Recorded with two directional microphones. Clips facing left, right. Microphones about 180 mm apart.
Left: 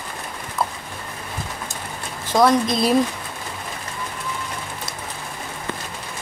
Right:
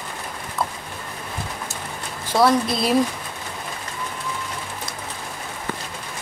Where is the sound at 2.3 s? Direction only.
5° right (ahead or behind).